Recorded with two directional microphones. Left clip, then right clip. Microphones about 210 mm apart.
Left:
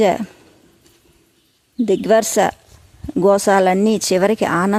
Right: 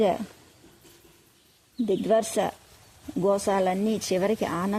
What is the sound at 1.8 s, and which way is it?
Speech, 25° left (ahead or behind).